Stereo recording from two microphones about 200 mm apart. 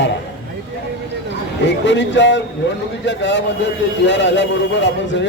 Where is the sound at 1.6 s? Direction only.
65° left (ahead or behind).